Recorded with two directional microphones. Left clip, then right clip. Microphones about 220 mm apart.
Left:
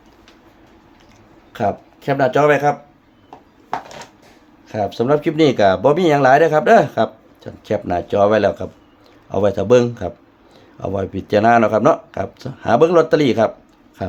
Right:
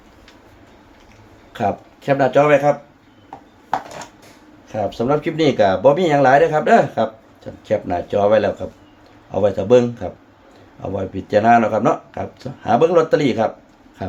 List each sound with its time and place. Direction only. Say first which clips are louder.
1.5 s speech: left 1 dB; 25° left (ahead or behind)
4.7 s speech: left 2 dB; 40° left (ahead or behind)